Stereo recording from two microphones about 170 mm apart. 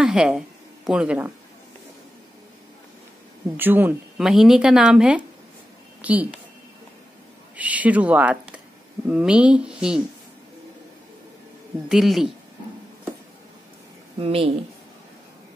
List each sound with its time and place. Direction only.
0.0 s a woman's voice: 5° right (ahead or behind)
3.5 s speech: 10° right (ahead or behind)
7.5 s speech: 10° right (ahead or behind)
11.9 s speech: centre (ahead or behind)
14.2 s speech: 35° right (ahead or behind)